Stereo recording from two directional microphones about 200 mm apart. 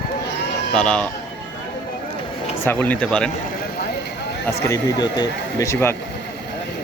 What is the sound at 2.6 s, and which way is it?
Speech, 10° left (ahead or behind).